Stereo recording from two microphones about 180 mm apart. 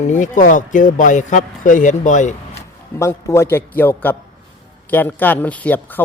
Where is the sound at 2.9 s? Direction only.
15° left (ahead or behind).